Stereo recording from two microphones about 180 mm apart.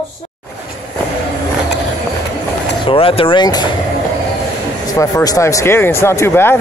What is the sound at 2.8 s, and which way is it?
Speech, 30° left (ahead or behind).